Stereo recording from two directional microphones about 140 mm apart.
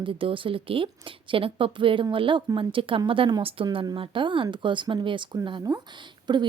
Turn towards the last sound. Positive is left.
turn(degrees=-30)  # may be behind; listen again after turning